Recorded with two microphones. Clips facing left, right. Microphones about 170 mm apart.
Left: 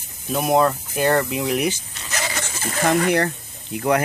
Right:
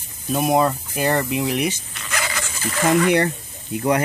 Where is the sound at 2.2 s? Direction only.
35° left (ahead or behind).